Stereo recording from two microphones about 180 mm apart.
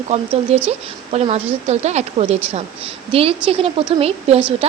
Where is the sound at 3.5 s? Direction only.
30° right (ahead or behind).